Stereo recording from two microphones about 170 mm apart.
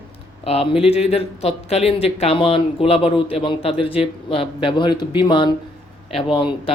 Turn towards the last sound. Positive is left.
turn(degrees=30)  # may be behind; listen again after turning